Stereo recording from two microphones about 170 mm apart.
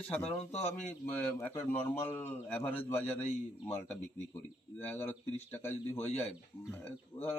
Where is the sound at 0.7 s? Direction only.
10° left (ahead or behind).